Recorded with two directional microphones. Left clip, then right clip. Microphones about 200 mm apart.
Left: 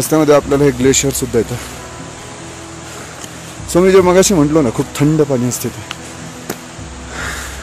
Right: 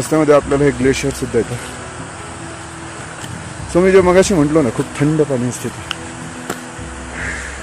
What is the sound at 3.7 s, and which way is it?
Speech, 20° left (ahead or behind).